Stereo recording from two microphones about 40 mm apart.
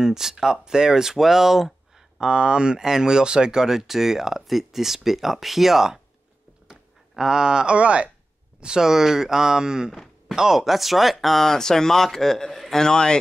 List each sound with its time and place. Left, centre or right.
0.0 s speech: centre
2.1 s speech: right
8.8 s speech: centre